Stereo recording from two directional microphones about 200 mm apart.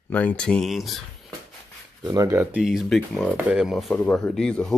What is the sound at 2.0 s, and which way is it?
Speech, 15° right (ahead or behind).